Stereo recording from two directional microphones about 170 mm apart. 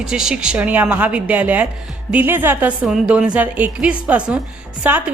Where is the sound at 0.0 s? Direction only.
5° right (ahead or behind).